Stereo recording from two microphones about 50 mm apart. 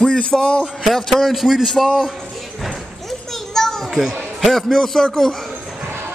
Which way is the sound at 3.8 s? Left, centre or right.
Centre.